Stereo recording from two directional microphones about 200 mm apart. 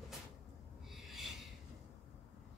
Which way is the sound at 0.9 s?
Centre (ahead or behind).